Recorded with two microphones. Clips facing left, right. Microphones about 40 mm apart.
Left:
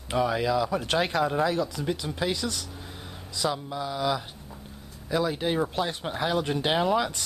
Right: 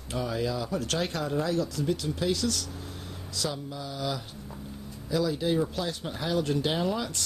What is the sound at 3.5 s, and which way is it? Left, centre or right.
Speech, left.